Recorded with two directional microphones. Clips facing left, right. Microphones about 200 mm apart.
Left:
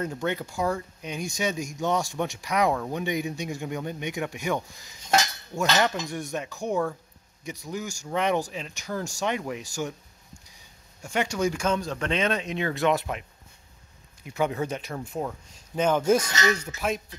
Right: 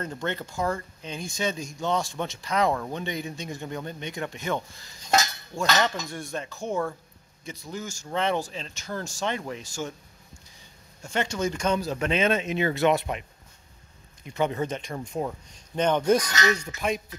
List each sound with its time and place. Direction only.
0.0 s speech: 10° left (ahead or behind)
6.0 s speech: 15° left (ahead or behind)
11.0 s speech: 10° left (ahead or behind)
14.2 s speech: 5° left (ahead or behind)